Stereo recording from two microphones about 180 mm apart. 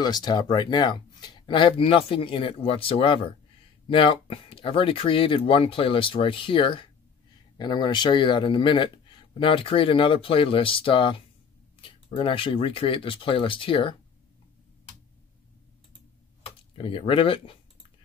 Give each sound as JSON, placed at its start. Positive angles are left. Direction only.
{"t": 0.0, "sound": "speech", "side_deg": 20}
{"t": 16.7, "sound": "speech", "side_deg": 30}